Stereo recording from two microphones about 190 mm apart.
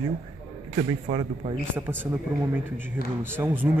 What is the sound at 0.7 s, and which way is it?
Speech, 25° right (ahead or behind).